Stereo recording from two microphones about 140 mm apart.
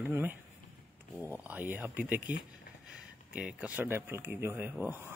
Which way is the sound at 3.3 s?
10° right (ahead or behind).